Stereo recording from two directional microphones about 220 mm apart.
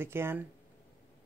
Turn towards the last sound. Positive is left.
turn(degrees=-10)  # may be behind; listen again after turning